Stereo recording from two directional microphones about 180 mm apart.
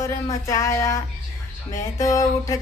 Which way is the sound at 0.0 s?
15° left (ahead or behind).